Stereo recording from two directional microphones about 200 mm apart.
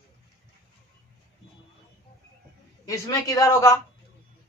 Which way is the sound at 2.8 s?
15° left (ahead or behind).